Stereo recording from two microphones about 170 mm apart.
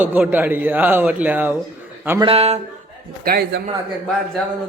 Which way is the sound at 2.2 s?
35° right (ahead or behind).